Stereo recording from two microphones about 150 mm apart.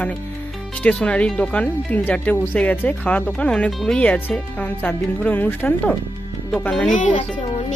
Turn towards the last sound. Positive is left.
turn(degrees=55)  # may be behind; listen again after turning